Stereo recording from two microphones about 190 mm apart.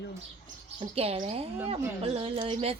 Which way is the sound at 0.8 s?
30° right (ahead or behind).